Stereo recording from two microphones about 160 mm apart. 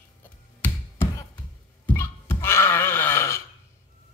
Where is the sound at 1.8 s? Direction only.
15° left (ahead or behind).